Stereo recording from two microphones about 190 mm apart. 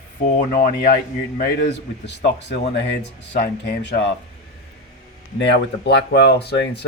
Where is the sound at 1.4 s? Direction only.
55° left (ahead or behind).